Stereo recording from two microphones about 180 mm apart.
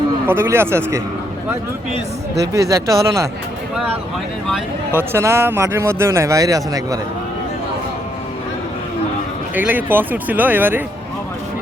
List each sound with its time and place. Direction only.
0.3 s speech: 15° right (ahead or behind)
2.5 s speech: 15° right (ahead or behind)
4.9 s speech: 15° right (ahead or behind)
9.6 s speech: 10° right (ahead or behind)